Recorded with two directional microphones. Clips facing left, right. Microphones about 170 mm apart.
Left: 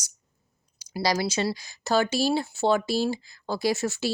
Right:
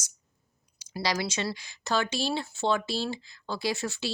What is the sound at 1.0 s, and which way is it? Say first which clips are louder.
A woman's voice: left 5 dB; 35° left (ahead or behind).